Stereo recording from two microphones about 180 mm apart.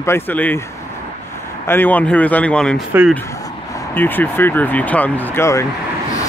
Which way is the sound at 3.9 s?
10° left (ahead or behind).